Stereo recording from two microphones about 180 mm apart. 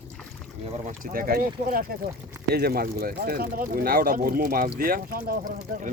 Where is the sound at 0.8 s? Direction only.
50° right (ahead or behind).